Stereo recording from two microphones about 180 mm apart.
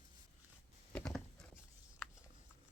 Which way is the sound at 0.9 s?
5° left (ahead or behind).